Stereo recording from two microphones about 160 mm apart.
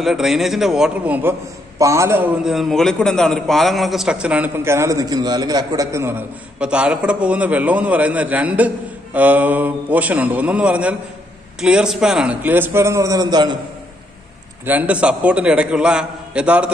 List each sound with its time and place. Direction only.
0.0 s a man's voice: centre (ahead or behind)
2.4 s a man's voice: centre (ahead or behind); by 13.6 s 25° right (ahead or behind)
14.7 s a man's voice: 10° right (ahead or behind)